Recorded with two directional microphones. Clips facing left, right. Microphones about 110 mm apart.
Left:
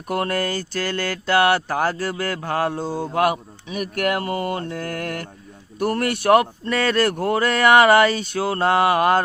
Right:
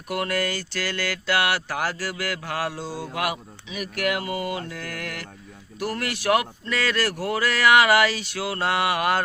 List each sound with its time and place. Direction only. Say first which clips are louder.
0.1 s speech: left 3 dB; 35° left (ahead or behind)
1.6 s a man's voice: left 6 dB; 25° left (ahead or behind)
2.7 s speech: left 7 dB; 45° left (ahead or behind)
3.0 s speech: left 8 dB; 35° left (ahead or behind)
7.3 s speech: left 3 dB; 35° left (ahead or behind)
8.4 s speech: left 6 dB; 30° left (ahead or behind)